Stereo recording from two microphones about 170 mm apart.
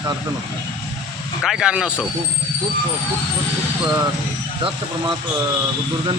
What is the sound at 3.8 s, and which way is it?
Speech, 15° right (ahead or behind).